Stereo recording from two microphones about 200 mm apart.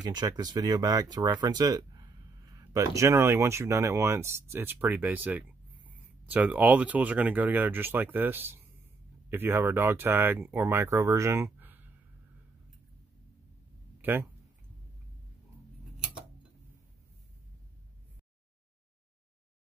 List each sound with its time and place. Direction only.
0.0 s speech: 20° right (ahead or behind)
14.0 s speech: 10° right (ahead or behind)